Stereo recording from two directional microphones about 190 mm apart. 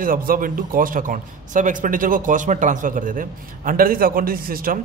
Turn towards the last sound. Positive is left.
turn(degrees=-50)  # may be behind; listen again after turning